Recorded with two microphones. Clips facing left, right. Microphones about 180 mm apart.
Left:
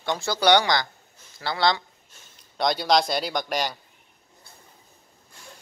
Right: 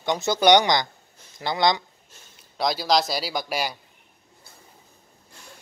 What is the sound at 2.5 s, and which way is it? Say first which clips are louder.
Speech: left 1 dB; centre (ahead or behind).